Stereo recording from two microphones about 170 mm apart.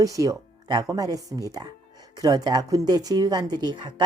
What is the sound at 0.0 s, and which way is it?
A woman's voice, 20° right (ahead or behind).